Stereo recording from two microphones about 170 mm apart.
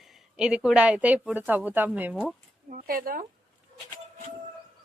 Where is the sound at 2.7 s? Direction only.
55° right (ahead or behind).